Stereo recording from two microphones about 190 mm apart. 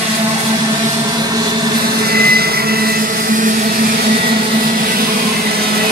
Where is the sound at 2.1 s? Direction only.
55° right (ahead or behind).